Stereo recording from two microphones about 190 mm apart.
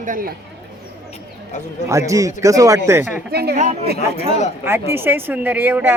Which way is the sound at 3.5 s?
40° right (ahead or behind).